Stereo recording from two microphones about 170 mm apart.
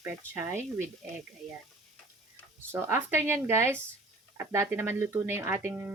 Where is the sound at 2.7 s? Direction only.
15° right (ahead or behind).